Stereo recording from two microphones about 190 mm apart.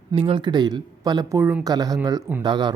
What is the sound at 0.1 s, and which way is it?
Speech, 25° right (ahead or behind).